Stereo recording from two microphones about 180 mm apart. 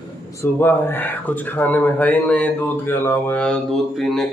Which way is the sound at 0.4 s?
10° left (ahead or behind).